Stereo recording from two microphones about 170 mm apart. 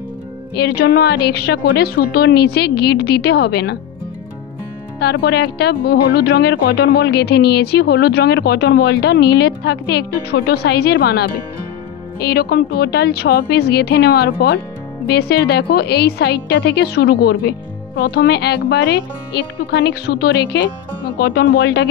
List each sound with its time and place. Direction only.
0.6 s speech: 70° left (ahead or behind)
5.0 s speech: 70° left (ahead or behind)